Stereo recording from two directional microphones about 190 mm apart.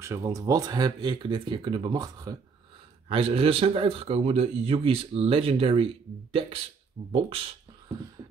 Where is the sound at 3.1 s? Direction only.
30° right (ahead or behind).